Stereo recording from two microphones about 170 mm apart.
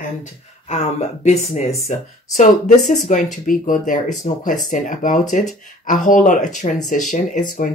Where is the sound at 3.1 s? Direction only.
45° left (ahead or behind).